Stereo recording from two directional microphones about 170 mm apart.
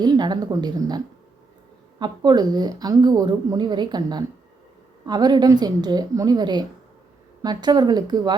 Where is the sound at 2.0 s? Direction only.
25° right (ahead or behind).